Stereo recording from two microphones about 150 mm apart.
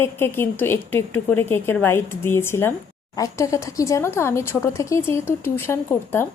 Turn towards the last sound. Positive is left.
turn(degrees=15)  # may be behind; listen again after turning